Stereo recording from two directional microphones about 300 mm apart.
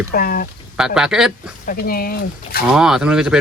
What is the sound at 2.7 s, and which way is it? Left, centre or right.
Speech, centre.